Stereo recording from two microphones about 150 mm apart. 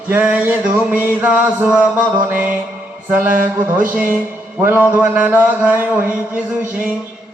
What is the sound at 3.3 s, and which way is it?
Mantra, 65° right (ahead or behind).